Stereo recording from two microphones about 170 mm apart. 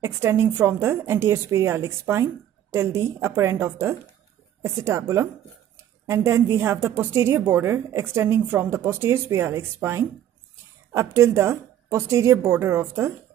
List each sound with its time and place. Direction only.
0.0 s a woman's voice: 15° right (ahead or behind)
6.0 s a woman's voice: 15° right (ahead or behind)